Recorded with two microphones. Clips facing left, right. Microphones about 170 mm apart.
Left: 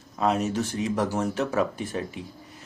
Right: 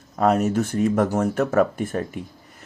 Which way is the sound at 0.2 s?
50° right (ahead or behind).